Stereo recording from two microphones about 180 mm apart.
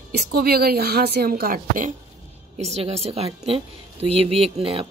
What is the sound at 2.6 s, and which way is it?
A woman's voice, 35° right (ahead or behind).